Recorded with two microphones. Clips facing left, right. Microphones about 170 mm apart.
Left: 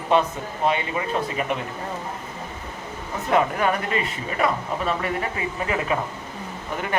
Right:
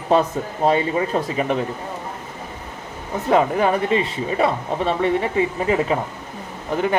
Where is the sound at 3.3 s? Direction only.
30° right (ahead or behind).